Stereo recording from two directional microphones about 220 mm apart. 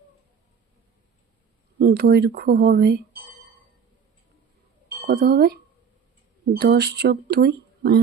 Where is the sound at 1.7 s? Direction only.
45° right (ahead or behind).